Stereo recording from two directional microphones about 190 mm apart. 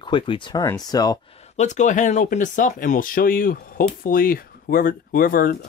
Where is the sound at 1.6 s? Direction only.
40° left (ahead or behind).